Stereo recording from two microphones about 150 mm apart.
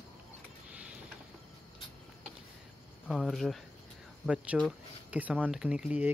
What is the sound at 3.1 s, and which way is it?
Speech, centre (ahead or behind).